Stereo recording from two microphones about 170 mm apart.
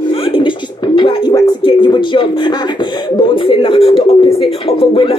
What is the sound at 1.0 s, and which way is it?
Speech, 25° left (ahead or behind).